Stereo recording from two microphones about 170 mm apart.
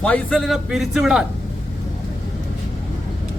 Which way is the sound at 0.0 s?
5° left (ahead or behind).